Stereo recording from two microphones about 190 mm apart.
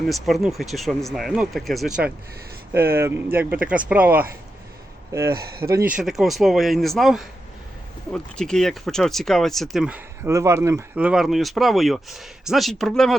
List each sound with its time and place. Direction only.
0.1 s speech: centre (ahead or behind)
5.6 s speech: 20° right (ahead or behind)
6.0 s speech: centre (ahead or behind)